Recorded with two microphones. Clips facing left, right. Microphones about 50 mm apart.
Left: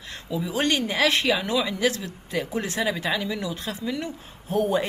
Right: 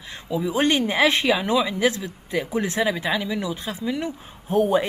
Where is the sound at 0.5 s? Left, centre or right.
Centre.